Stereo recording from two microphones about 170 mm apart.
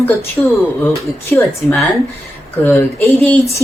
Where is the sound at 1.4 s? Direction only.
10° left (ahead or behind).